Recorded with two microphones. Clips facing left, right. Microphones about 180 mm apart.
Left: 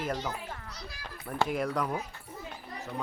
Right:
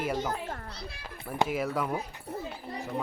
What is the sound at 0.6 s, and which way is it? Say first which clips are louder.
Speech: right 3 dB; 30° right (ahead or behind).